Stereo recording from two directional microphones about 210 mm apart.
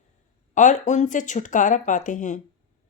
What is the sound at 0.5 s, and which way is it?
Speech, 35° left (ahead or behind).